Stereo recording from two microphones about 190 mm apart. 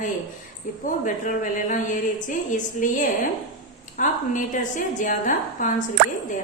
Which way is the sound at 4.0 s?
40° left (ahead or behind).